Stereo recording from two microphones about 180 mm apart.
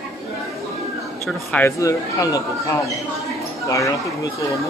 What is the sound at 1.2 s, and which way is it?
Speech, 10° left (ahead or behind).